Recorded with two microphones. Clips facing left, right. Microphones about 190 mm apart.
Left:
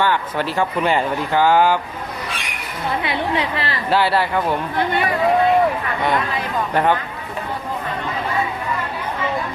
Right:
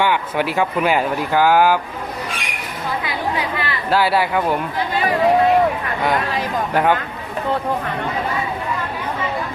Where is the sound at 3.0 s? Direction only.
25° left (ahead or behind).